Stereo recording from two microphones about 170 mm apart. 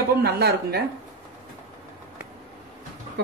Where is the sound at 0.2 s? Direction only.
70° right (ahead or behind).